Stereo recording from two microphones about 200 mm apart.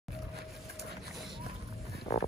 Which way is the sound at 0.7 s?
Centre (ahead or behind).